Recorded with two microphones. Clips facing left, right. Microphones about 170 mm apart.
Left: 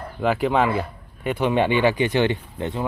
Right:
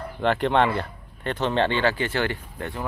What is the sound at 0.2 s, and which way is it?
Speech, 5° left (ahead or behind).